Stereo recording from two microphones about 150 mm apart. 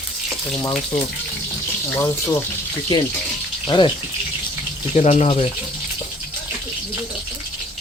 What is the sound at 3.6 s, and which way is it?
Speech, 35° left (ahead or behind).